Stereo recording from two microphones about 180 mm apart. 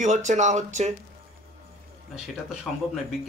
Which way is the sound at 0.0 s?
40° right (ahead or behind).